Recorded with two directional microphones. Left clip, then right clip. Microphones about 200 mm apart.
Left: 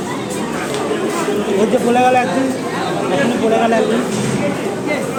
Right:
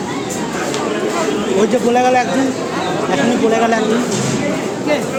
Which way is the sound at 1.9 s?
15° right (ahead or behind).